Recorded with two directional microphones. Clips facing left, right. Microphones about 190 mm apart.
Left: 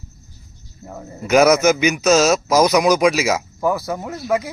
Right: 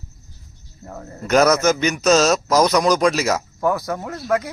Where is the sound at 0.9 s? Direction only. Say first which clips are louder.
Left 2 dB; 10° left (ahead or behind).